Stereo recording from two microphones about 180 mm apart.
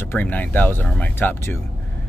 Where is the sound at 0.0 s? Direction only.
10° left (ahead or behind).